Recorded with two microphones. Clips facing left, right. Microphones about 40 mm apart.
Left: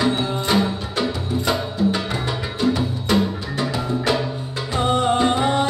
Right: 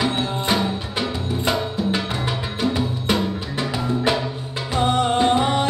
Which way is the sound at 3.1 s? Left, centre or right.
Centre.